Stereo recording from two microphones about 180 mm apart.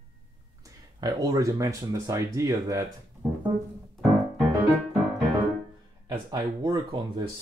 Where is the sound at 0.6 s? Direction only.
20° right (ahead or behind).